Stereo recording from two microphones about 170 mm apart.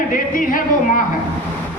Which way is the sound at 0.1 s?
55° left (ahead or behind).